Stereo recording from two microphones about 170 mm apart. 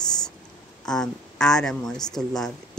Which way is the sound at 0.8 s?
5° left (ahead or behind).